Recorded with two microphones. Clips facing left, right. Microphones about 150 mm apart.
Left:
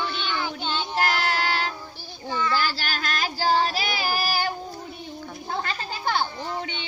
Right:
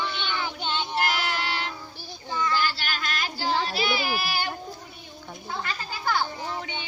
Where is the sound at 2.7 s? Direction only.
40° left (ahead or behind).